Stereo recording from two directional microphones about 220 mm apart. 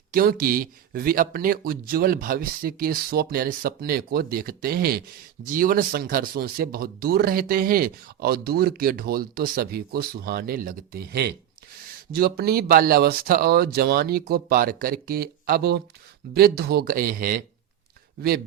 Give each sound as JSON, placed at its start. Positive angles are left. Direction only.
{"t": 0.1, "sound": "speech", "side_deg": -40}